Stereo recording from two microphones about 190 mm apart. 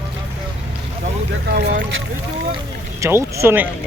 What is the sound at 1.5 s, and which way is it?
Speech, 60° right (ahead or behind).